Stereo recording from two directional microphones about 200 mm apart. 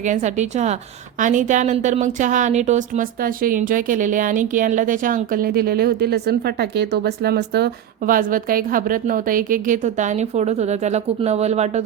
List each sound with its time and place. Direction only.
0.0 s a woman's voice: 35° right (ahead or behind)